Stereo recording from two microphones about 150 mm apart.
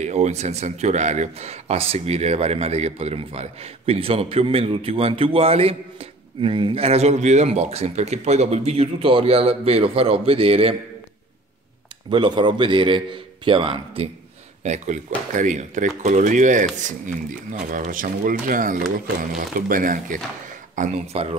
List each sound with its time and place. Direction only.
0.0 s speech: 50° right (ahead or behind)
12.1 s speech: 30° right (ahead or behind)
14.6 s speech: 50° right (ahead or behind)